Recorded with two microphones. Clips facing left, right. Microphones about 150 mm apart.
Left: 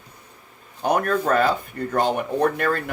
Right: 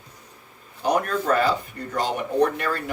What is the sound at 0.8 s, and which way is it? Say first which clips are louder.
Speech: left 2 dB; 55° left (ahead or behind).